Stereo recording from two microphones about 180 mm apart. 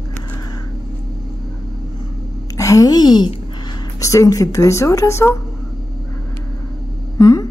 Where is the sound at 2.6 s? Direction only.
20° left (ahead or behind).